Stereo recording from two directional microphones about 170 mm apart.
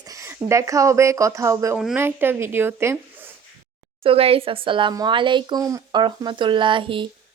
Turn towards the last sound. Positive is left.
turn(degrees=-30)  # may be behind; listen again after turning